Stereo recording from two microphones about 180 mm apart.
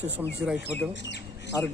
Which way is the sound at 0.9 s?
75° left (ahead or behind).